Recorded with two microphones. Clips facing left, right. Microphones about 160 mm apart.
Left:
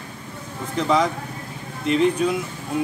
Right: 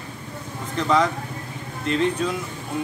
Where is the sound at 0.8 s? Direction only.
10° left (ahead or behind).